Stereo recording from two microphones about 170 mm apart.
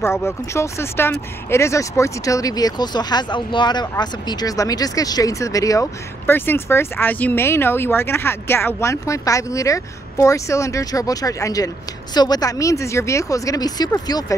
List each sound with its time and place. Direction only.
0.0 s speech: 15° left (ahead or behind)